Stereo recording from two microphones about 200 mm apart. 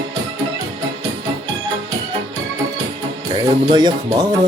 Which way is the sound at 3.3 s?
20° right (ahead or behind).